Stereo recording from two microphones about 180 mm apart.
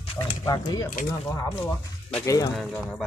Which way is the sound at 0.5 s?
20° left (ahead or behind).